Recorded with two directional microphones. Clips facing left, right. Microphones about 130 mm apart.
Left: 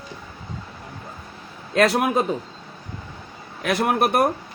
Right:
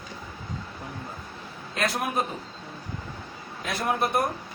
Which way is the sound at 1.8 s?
70° left (ahead or behind).